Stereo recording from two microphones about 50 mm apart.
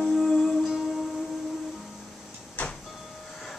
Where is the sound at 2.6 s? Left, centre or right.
Left.